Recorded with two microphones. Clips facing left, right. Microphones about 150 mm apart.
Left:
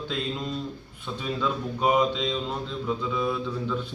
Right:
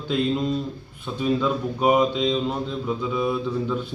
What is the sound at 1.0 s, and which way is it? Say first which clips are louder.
Speech: right 6 dB; 10° right (ahead or behind).